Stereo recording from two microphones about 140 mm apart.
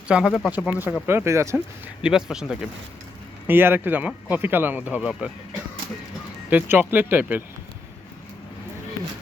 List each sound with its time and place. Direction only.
0.1 s speech: 5° right (ahead or behind)
1.0 s speech: 20° right (ahead or behind)
2.0 s speech: 5° right (ahead or behind)
3.4 s speech: 15° right (ahead or behind)
6.5 s speech: 15° right (ahead or behind)